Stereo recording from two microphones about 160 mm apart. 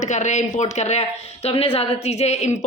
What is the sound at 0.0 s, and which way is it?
A woman's voice, 45° left (ahead or behind).